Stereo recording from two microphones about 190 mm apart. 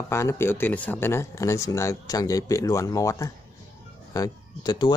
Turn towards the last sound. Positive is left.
turn(degrees=20)  # may be behind; listen again after turning